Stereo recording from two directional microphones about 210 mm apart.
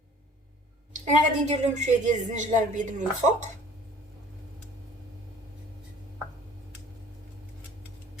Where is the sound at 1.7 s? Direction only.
35° right (ahead or behind).